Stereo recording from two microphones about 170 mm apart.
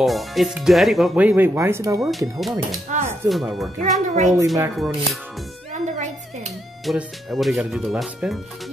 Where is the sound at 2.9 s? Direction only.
45° right (ahead or behind).